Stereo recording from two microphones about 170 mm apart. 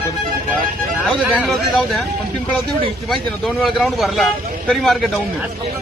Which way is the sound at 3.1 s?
Centre (ahead or behind).